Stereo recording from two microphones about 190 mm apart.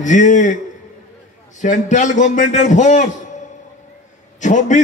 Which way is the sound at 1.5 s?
40° left (ahead or behind).